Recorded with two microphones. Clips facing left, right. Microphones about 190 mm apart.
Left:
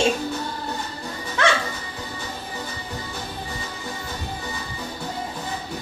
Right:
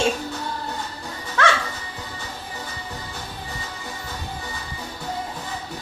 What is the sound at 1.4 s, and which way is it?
Music, 20° left (ahead or behind).